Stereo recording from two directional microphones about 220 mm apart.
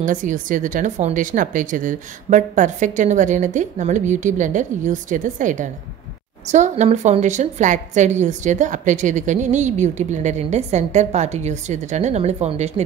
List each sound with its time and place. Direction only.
0.0 s a woman's voice: 35° right (ahead or behind)